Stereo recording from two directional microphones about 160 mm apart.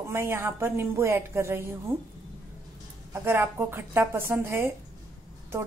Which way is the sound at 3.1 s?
15° right (ahead or behind).